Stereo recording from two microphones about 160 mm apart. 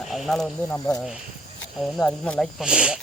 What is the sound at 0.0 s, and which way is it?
Speech, centre (ahead or behind).